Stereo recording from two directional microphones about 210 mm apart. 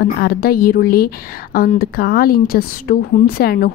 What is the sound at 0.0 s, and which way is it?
A woman's voice, 45° left (ahead or behind).